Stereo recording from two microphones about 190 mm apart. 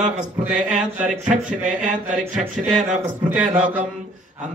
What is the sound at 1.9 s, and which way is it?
Speech, 40° right (ahead or behind).